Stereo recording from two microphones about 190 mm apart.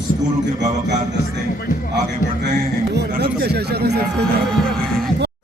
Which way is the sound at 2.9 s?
55° right (ahead or behind).